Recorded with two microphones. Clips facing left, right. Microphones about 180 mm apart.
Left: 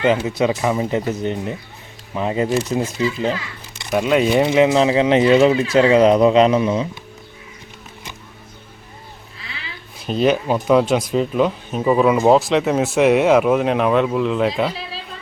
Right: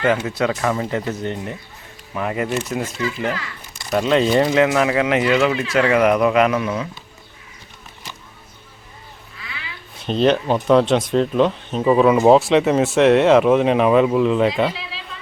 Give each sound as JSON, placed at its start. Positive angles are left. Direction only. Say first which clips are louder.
{"t": 0.0, "sound": "speech", "louder": "left 2 dB", "side_deg": 15}
{"t": 3.9, "sound": "speech", "louder": "even", "side_deg": 10}
{"t": 4.4, "sound": "speech", "louder": "left 2 dB", "side_deg": 20}
{"t": 10.0, "sound": "speech", "louder": "even", "side_deg": 5}
{"t": 14.7, "sound": "a sound", "louder": "left 2 dB", "side_deg": 40}